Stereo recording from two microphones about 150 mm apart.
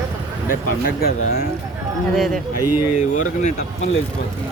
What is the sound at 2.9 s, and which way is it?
Speech, 50° left (ahead or behind).